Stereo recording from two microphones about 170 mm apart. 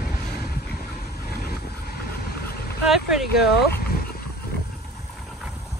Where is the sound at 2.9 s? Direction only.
Centre (ahead or behind).